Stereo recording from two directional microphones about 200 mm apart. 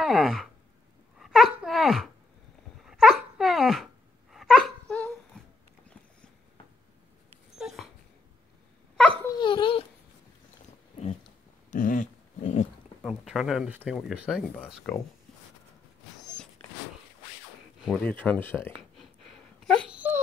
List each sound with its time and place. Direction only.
0.0 s sigh: centre (ahead or behind)
1.2 s a sound: centre (ahead or behind)
2.8 s wail: centre (ahead or behind)
7.5 s dog: centre (ahead or behind)
9.2 s dog: 20° left (ahead or behind)
11.7 s dog: 40° left (ahead or behind)
13.0 s a sound: centre (ahead or behind)
14.0 s speech: 5° right (ahead or behind)
16.2 s a sound: 5° left (ahead or behind)
17.8 s speech: 5° left (ahead or behind)
18.8 s wail: centre (ahead or behind)